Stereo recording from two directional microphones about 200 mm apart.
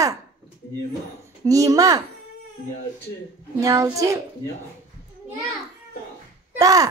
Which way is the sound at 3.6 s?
15° right (ahead or behind).